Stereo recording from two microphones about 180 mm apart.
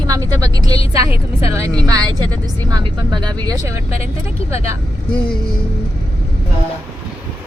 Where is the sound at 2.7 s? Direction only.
20° right (ahead or behind).